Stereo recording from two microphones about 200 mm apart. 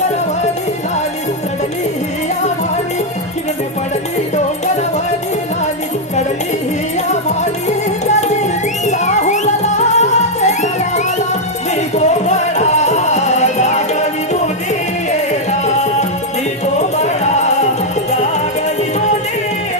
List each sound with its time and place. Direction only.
7.1 s music: 35° left (ahead or behind)
15.6 s music: 35° left (ahead or behind)